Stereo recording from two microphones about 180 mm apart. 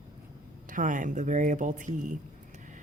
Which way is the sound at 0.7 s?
45° right (ahead or behind).